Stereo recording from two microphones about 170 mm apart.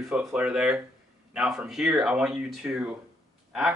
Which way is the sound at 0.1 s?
5° right (ahead or behind).